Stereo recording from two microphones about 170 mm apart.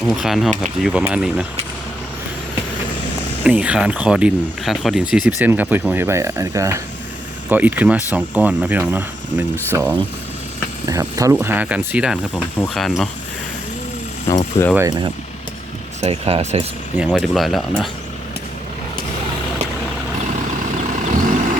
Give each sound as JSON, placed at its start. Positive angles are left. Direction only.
{"t": 0.0, "sound": "speech", "side_deg": 0}
{"t": 3.4, "sound": "speech", "side_deg": -10}
{"t": 14.3, "sound": "speech", "side_deg": 20}
{"t": 14.8, "sound": "speech", "side_deg": -25}
{"t": 16.0, "sound": "speech", "side_deg": -35}
{"t": 17.0, "sound": "speech", "side_deg": 0}
{"t": 21.0, "sound": "vehicle", "side_deg": -50}